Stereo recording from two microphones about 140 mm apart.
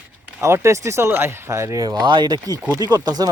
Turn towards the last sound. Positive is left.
turn(degrees=-30)  # may be behind; listen again after turning